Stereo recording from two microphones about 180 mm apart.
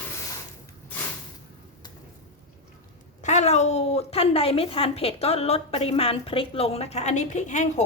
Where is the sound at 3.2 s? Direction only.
40° left (ahead or behind).